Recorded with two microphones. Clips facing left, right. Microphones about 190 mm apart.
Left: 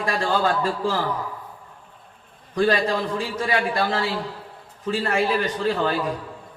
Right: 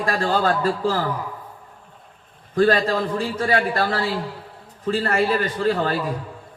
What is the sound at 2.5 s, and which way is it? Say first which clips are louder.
A man's voice: right 3 dB; 50° right (ahead or behind).